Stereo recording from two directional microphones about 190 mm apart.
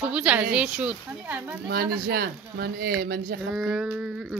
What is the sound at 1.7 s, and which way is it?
Speech, 55° right (ahead or behind).